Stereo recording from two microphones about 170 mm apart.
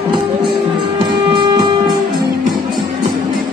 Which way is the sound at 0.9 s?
25° right (ahead or behind).